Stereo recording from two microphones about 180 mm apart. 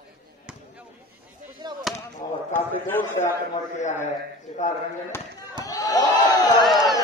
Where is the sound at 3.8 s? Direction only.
40° left (ahead or behind).